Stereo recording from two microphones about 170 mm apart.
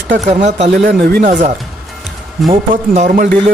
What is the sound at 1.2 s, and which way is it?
Speech, 45° right (ahead or behind).